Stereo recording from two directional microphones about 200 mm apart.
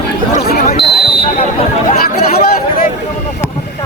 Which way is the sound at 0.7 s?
30° left (ahead or behind).